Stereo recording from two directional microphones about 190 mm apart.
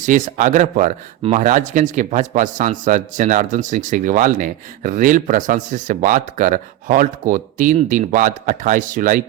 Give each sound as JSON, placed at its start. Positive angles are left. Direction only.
{"t": 0.0, "sound": "speech", "side_deg": -40}